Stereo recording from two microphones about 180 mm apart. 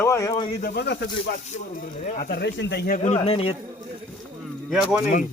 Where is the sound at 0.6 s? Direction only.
50° left (ahead or behind).